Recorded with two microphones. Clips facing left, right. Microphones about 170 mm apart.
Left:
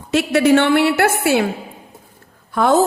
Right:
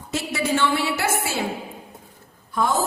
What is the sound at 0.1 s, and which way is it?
A woman's voice, 70° left (ahead or behind).